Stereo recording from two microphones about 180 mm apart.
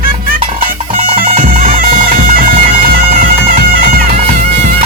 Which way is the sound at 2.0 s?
50° right (ahead or behind).